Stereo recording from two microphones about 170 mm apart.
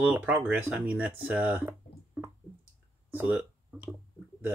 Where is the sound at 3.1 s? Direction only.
10° right (ahead or behind).